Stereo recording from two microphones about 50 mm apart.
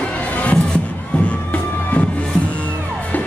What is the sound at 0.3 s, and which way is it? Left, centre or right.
Music, left.